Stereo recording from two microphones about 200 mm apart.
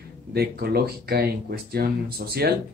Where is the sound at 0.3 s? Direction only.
50° right (ahead or behind).